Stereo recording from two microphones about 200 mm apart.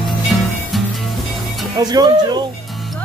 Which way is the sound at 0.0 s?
Centre (ahead or behind).